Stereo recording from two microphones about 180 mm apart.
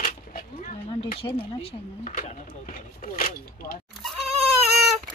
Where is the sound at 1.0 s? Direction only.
30° left (ahead or behind).